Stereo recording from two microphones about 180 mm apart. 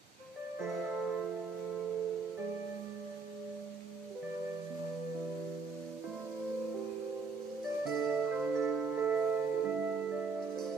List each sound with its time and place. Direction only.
7.8 s music: centre (ahead or behind)